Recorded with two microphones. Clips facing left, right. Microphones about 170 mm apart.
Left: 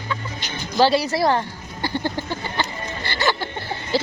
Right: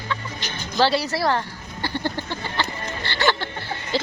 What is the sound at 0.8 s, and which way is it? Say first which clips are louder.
Speech: left 3 dB; 15° left (ahead or behind).